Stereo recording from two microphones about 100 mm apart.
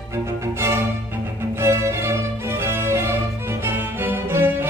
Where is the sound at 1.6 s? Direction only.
25° right (ahead or behind).